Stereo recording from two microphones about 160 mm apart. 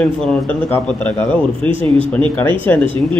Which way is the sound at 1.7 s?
35° right (ahead or behind).